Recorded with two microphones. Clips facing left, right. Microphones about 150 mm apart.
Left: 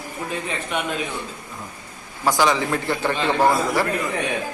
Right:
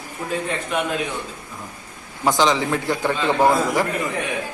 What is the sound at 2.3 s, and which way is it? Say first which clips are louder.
Speech: right 1 dB; 20° right (ahead or behind).